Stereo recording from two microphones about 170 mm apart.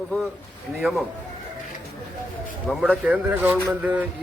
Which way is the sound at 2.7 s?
5° right (ahead or behind).